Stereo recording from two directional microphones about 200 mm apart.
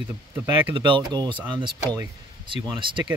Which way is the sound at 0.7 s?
25° right (ahead or behind).